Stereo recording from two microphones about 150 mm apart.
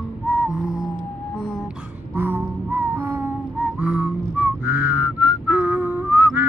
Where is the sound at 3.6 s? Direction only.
10° right (ahead or behind).